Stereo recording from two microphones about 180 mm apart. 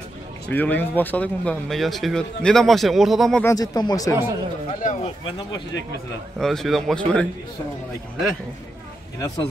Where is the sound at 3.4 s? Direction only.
15° left (ahead or behind).